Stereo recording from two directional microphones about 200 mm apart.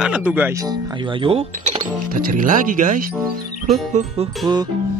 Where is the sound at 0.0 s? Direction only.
5° right (ahead or behind); by 1.8 s 30° right (ahead or behind).